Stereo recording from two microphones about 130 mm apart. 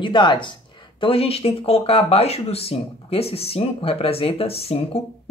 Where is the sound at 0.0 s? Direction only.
35° left (ahead or behind).